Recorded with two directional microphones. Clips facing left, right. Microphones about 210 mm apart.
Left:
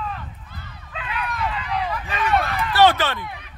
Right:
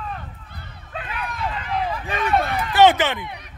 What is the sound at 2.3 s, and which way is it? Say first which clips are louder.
Speech: even; 25° right (ahead or behind).